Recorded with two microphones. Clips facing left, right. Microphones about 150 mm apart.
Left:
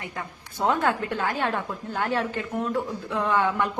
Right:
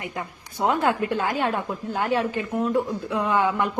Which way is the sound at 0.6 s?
10° right (ahead or behind).